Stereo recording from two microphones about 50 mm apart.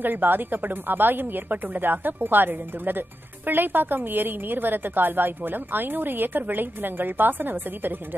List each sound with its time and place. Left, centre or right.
0.0 s a woman's voice: right